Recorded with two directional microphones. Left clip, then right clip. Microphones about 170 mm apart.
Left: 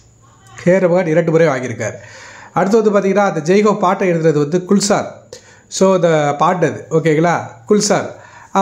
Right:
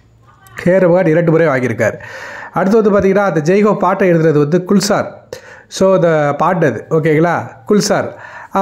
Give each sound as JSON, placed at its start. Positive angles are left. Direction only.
{"t": 0.6, "sound": "a man's voice", "side_deg": -40}